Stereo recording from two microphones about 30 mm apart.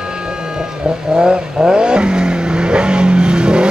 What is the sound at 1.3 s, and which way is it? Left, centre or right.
Vehicle, right.